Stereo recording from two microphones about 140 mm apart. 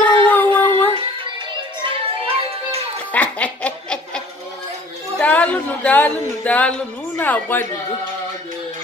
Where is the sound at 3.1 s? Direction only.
10° left (ahead or behind).